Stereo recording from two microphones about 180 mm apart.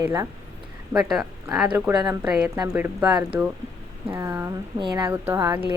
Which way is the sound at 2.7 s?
10° right (ahead or behind).